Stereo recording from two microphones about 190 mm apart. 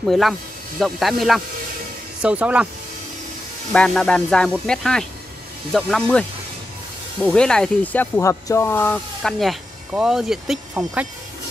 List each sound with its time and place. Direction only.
0.1 s speech: centre (ahead or behind)
3.7 s speech: 5° left (ahead or behind)
7.2 s speech: 5° left (ahead or behind)